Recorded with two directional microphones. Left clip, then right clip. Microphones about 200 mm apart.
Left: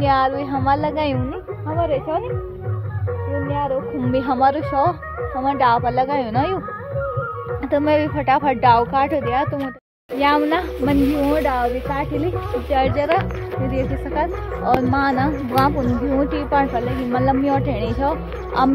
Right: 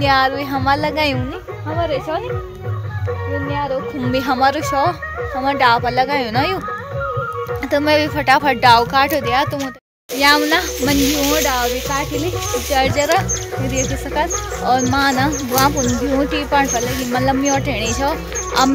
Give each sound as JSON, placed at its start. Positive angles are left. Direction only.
{"t": 0.0, "sound": "speech", "side_deg": -10}
{"t": 4.1, "sound": "speech", "side_deg": -10}
{"t": 7.7, "sound": "speech", "side_deg": -10}
{"t": 12.5, "sound": "speech", "side_deg": -15}